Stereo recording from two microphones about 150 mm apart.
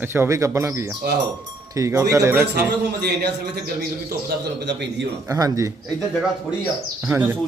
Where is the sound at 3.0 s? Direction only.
90° right.